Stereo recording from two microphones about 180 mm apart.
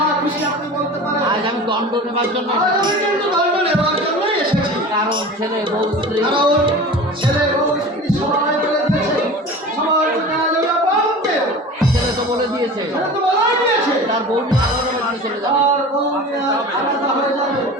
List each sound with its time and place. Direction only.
5.8 s music: 25° right (ahead or behind)